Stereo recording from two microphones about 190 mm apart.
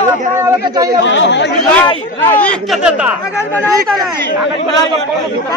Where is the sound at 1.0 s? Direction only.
70° left (ahead or behind).